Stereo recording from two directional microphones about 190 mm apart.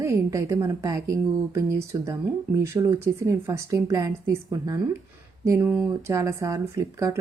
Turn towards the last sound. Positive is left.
turn(degrees=-15)  # may be behind; listen again after turning